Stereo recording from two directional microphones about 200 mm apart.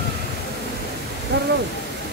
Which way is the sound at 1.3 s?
60° right (ahead or behind).